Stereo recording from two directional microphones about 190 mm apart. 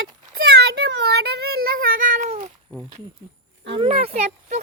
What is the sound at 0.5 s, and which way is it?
Cat, 60° right (ahead or behind).